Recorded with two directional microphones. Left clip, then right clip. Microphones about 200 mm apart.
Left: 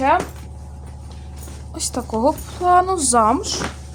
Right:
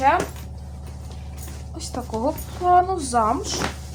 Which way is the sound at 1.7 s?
60° left (ahead or behind).